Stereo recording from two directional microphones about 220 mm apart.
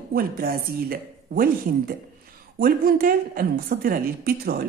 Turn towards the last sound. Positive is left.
turn(degrees=-45)  # may be behind; listen again after turning